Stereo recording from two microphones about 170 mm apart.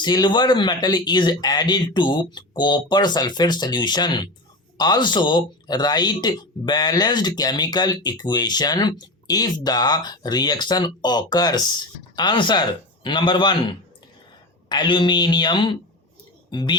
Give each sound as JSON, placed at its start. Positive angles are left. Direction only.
{"t": 0.0, "sound": "speech", "side_deg": 25}